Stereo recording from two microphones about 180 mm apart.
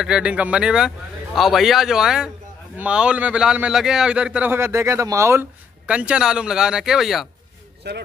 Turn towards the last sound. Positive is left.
turn(degrees=-65)  # may be behind; listen again after turning